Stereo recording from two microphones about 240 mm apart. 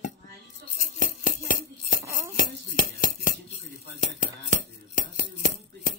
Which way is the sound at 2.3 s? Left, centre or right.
Left.